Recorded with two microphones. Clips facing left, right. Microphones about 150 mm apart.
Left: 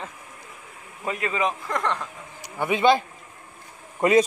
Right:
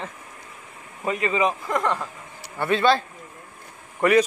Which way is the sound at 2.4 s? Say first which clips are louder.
Right 1 dB; 15° left (ahead or behind).